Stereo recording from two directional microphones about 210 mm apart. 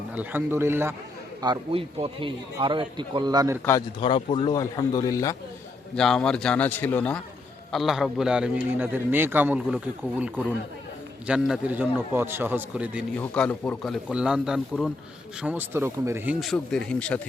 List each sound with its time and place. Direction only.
0.1 s a man's voice: 10° right (ahead or behind)
1.4 s a man's voice: 25° right (ahead or behind)
4.0 s a man's voice: 25° left (ahead or behind)
6.0 s a man's voice: 5° left (ahead or behind)
13.1 s speech: 5° left (ahead or behind)